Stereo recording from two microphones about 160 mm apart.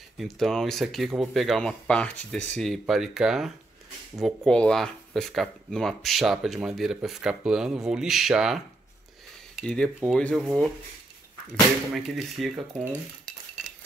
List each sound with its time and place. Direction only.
0.2 s speech: centre (ahead or behind)
11.9 s speech: centre (ahead or behind)